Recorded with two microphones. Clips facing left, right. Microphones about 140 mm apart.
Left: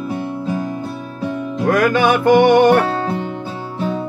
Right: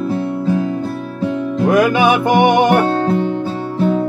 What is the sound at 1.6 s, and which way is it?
Music, 15° right (ahead or behind).